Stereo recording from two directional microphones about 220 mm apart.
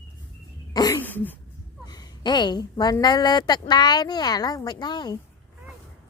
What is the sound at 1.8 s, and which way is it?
A woman's voice, 20° left (ahead or behind).